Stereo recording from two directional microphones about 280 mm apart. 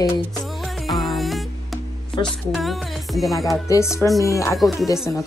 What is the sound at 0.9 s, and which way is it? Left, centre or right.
Music, centre.